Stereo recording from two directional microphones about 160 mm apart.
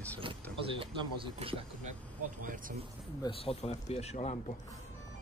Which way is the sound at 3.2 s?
35° left (ahead or behind).